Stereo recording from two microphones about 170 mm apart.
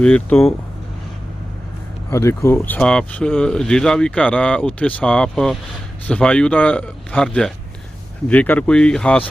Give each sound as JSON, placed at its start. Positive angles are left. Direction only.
{"t": 0.0, "sound": "speech", "side_deg": 10}
{"t": 2.0, "sound": "speech", "side_deg": 15}